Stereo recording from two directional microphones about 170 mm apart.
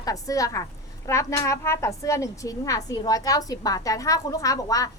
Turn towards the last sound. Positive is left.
turn(degrees=20)  # may be behind; listen again after turning